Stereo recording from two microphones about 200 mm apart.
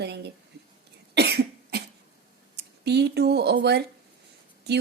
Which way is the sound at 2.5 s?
55° right (ahead or behind).